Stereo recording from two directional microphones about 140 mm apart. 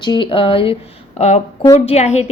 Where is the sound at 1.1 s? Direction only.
55° left (ahead or behind).